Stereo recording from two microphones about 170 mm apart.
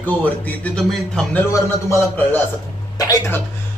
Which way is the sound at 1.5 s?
15° left (ahead or behind).